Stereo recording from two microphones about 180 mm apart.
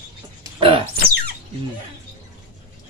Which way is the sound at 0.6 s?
30° right (ahead or behind).